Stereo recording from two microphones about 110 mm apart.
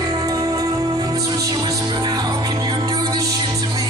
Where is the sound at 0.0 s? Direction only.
35° right (ahead or behind).